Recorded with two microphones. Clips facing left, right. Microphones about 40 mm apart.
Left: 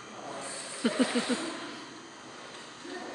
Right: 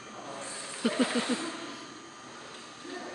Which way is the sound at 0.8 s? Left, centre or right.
Centre.